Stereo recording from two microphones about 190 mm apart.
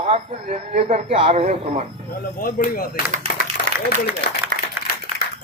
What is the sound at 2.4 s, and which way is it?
Speech, 50° left (ahead or behind).